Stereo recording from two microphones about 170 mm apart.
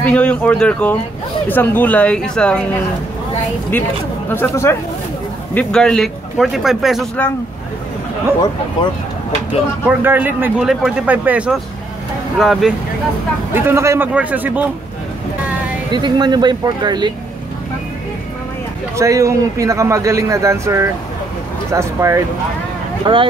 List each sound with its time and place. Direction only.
0.0 s speech: 5° left (ahead or behind)
3.7 s speech: 10° left (ahead or behind)
9.8 s speech: 10° right (ahead or behind)
13.5 s speech: 15° right (ahead or behind)
15.9 s speech: 25° right (ahead or behind)
18.9 s speech: 15° right (ahead or behind)
23.1 s speech: 25° right (ahead or behind)